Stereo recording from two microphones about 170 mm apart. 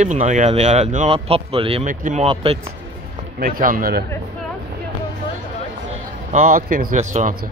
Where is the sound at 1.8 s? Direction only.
45° right (ahead or behind).